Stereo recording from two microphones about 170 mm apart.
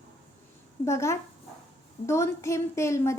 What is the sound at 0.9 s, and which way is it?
A woman's voice, 15° left (ahead or behind).